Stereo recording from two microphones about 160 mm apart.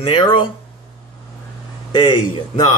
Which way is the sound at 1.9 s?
30° left (ahead or behind).